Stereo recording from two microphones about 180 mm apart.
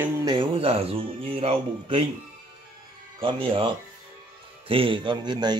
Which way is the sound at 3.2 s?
30° right (ahead or behind).